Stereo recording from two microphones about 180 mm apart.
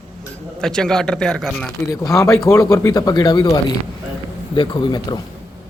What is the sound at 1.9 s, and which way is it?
Speech, 20° left (ahead or behind).